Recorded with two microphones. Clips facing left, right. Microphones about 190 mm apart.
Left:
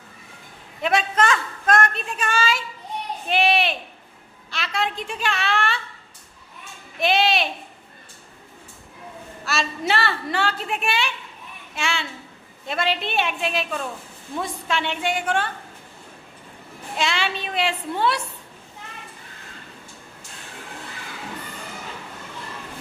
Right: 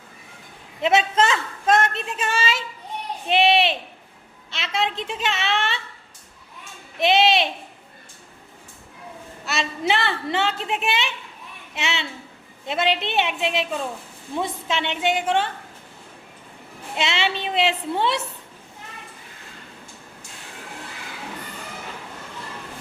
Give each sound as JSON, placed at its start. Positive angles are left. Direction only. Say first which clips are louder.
{"t": 0.8, "sound": "a woman's voice", "louder": "right 2 dB", "side_deg": -25}
{"t": 7.0, "sound": "a woman's voice", "louder": "right 2 dB", "side_deg": -25}
{"t": 9.4, "sound": "a woman's voice", "louder": "even", "side_deg": -20}
{"t": 17.0, "sound": "a woman's voice", "louder": "right 1 dB", "side_deg": -25}